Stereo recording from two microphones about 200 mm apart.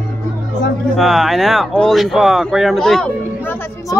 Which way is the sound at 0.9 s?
Centre (ahead or behind).